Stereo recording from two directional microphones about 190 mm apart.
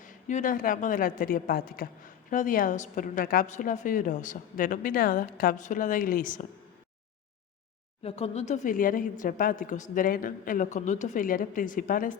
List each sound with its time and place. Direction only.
0.0 s a woman's voice: 40° left (ahead or behind)
8.0 s a woman's voice: 30° left (ahead or behind)